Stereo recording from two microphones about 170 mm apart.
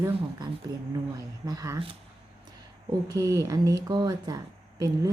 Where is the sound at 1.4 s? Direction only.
20° right (ahead or behind).